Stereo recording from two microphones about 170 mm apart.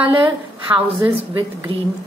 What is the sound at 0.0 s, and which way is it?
A woman's voice, 30° right (ahead or behind).